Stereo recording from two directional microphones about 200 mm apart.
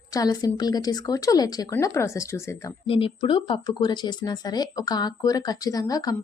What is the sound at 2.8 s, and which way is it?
Speech, 25° left (ahead or behind).